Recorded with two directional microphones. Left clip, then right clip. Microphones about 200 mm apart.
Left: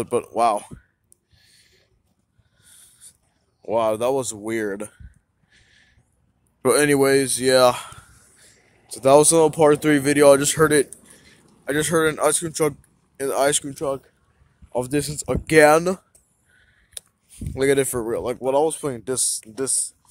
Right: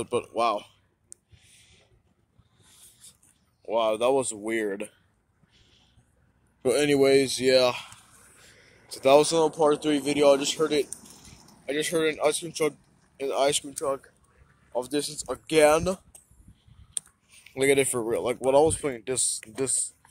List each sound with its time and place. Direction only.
0.0 s speech: 50° left (ahead or behind)
3.6 s speech: 40° left (ahead or behind)
4.0 s speech: 15° left (ahead or behind)
5.5 s a sound: 50° left (ahead or behind)
6.6 s speech: 50° left (ahead or behind)
8.6 s a sound: 30° left (ahead or behind)
9.3 s speech: 60° left (ahead or behind)
10.9 s a sound: 20° right (ahead or behind)
11.6 s speech: 40° left (ahead or behind); by 16.1 s 60° left (ahead or behind)
17.5 s speech: 30° left (ahead or behind); by 18.9 s 15° left (ahead or behind)
18.9 s speech: 30° left (ahead or behind)